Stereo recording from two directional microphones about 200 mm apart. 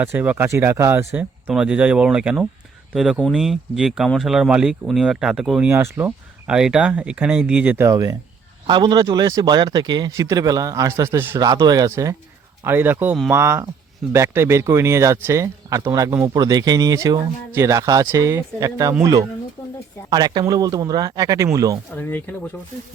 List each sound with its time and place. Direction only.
0.0 s speech: 10° right (ahead or behind)
20.1 s speech: 20° right (ahead or behind)
21.9 s speech: 10° left (ahead or behind)